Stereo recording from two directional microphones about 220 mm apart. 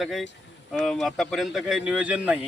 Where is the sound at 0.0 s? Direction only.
Centre (ahead or behind).